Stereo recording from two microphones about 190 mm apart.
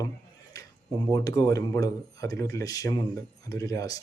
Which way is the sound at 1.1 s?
20° left (ahead or behind).